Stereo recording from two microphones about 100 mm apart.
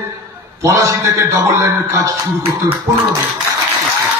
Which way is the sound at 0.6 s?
30° right (ahead or behind).